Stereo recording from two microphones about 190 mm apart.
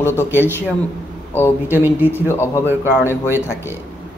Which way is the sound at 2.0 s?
10° left (ahead or behind).